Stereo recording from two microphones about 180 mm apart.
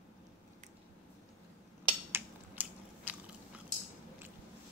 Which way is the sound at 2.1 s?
10° right (ahead or behind).